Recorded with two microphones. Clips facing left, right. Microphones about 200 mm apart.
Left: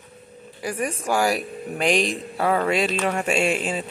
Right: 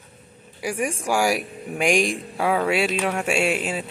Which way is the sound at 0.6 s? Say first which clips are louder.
Right 1 dB; 10° right (ahead or behind).